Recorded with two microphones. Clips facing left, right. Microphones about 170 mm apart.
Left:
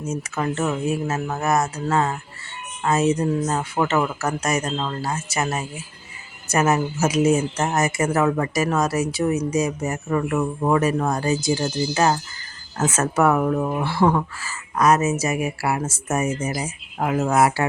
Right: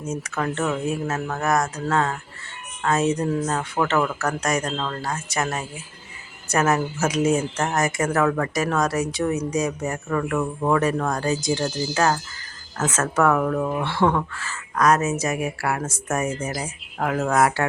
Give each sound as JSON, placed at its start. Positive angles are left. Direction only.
{"t": 0.1, "sound": "speech", "side_deg": 5}
{"t": 11.6, "sound": "speech", "side_deg": 15}